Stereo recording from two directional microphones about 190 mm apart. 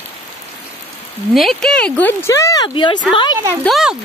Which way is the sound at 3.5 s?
5° left (ahead or behind).